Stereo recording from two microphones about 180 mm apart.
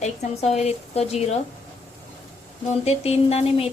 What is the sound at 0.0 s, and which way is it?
A woman's voice, 40° left (ahead or behind).